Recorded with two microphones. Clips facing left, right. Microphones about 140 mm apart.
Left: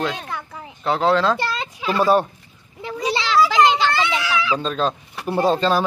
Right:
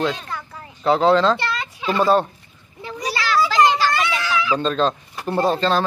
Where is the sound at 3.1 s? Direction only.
20° left (ahead or behind).